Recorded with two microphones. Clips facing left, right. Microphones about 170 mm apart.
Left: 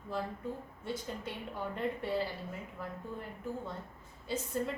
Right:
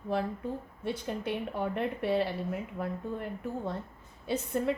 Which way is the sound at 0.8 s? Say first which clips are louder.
Right 6 dB; 70° right (ahead or behind).